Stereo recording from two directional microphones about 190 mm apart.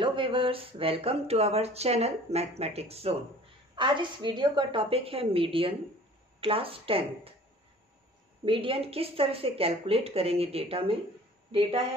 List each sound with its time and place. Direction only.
0.0 s a woman's voice: 25° right (ahead or behind)
8.5 s a woman's voice: 30° right (ahead or behind)